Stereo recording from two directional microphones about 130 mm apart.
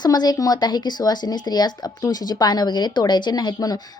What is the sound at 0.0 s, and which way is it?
A woman's voice, 30° left (ahead or behind).